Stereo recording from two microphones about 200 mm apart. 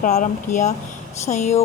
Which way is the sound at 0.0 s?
40° left (ahead or behind).